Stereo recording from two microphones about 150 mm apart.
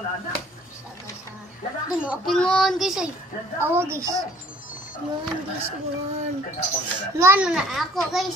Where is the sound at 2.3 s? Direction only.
5° left (ahead or behind).